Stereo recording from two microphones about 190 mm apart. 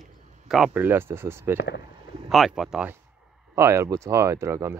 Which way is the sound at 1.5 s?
70° left (ahead or behind).